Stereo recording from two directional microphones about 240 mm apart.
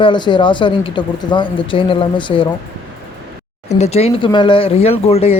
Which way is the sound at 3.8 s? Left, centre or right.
Left.